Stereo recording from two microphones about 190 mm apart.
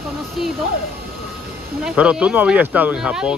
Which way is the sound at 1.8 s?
5° right (ahead or behind).